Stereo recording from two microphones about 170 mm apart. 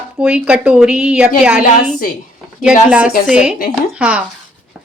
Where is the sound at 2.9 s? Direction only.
5° right (ahead or behind).